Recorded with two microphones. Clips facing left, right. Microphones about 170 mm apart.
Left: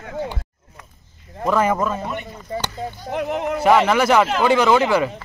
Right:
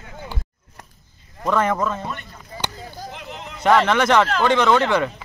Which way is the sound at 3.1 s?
65° left (ahead or behind).